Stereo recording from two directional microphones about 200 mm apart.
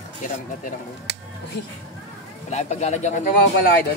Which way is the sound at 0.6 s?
55° left (ahead or behind).